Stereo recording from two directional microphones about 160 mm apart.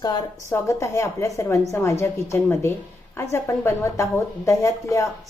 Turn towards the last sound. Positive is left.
turn(degrees=20)  # may be behind; listen again after turning